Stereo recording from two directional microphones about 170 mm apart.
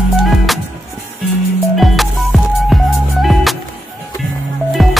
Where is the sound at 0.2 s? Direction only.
Centre (ahead or behind).